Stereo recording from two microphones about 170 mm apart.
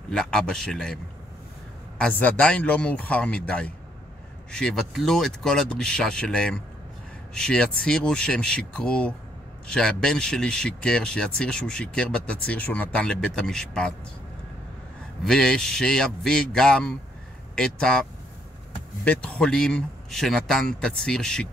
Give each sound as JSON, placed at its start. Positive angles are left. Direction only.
{"t": 0.1, "sound": "speech", "side_deg": 5}
{"t": 2.0, "sound": "speech", "side_deg": 5}
{"t": 15.2, "sound": "speech", "side_deg": 5}
{"t": 19.0, "sound": "speech", "side_deg": 5}